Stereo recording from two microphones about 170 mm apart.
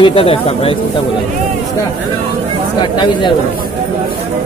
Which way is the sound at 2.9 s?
25° left (ahead or behind).